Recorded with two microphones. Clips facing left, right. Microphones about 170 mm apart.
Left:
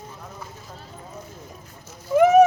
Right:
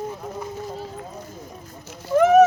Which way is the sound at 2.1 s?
10° left (ahead or behind).